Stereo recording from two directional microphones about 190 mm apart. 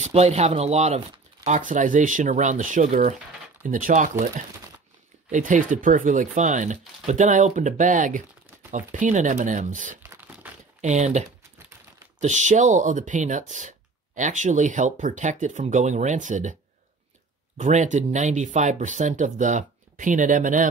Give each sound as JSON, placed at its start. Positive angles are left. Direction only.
{"t": 0.0, "sound": "speech", "side_deg": -35}
{"t": 10.0, "sound": "crumpling", "side_deg": -10}
{"t": 10.8, "sound": "speech", "side_deg": -35}
{"t": 17.6, "sound": "speech", "side_deg": -40}